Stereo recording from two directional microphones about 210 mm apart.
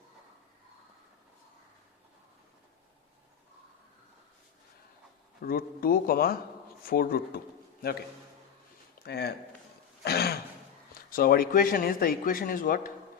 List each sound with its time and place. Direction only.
5.4 s speech: 45° left (ahead or behind)
9.0 s speech: 50° left (ahead or behind)